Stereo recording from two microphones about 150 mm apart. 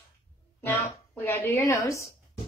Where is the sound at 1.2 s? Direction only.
15° left (ahead or behind).